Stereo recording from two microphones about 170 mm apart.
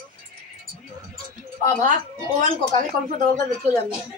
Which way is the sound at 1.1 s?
55° right (ahead or behind).